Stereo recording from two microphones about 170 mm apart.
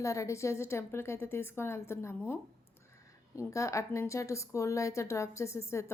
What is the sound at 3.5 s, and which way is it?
A woman's voice, 20° left (ahead or behind).